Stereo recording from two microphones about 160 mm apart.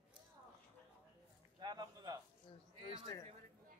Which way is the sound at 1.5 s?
25° right (ahead or behind).